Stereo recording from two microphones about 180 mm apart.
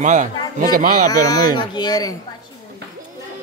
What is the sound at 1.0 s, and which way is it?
Speech, 20° left (ahead or behind).